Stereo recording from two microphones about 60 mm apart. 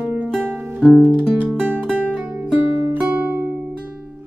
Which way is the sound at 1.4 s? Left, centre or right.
Right.